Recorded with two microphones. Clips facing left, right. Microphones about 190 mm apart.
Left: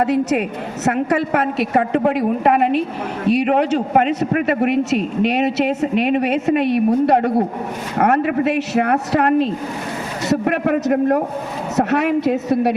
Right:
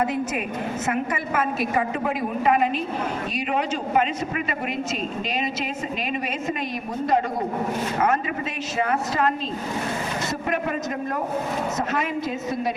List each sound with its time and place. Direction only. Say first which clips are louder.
0.0 s a man's voice: left 8 dB; 70° left (ahead or behind)